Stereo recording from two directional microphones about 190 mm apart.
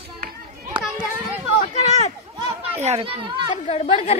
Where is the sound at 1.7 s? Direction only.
35° left (ahead or behind).